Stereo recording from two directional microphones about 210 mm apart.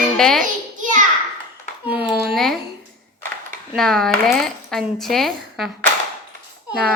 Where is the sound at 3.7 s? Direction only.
Centre (ahead or behind).